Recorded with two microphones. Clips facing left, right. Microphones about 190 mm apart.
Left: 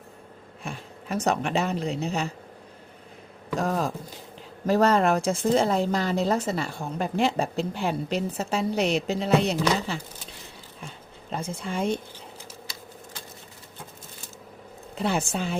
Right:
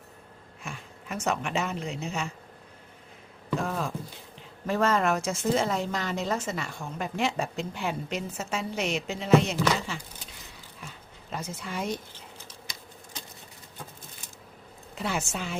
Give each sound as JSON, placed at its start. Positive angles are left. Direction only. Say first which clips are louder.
{"t": 0.6, "sound": "a woman's voice", "louder": "left 4 dB", "side_deg": 35}
{"t": 3.6, "sound": "a sound", "louder": "left 7 dB", "side_deg": 40}
{"t": 4.6, "sound": "a woman's voice", "louder": "left 5 dB", "side_deg": 35}
{"t": 11.3, "sound": "speech", "louder": "left 4 dB", "side_deg": 30}
{"t": 14.9, "sound": "a woman's voice", "louder": "left 5 dB", "side_deg": 30}